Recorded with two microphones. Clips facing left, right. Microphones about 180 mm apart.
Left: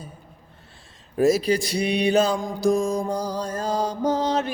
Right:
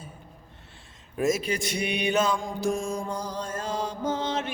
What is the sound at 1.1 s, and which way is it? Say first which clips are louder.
Mantra: left 7 dB; 35° left (ahead or behind).